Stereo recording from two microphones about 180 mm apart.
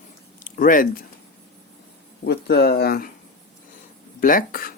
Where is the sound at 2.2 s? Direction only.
65° left (ahead or behind).